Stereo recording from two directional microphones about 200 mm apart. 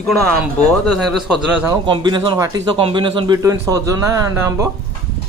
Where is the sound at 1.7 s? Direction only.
20° right (ahead or behind).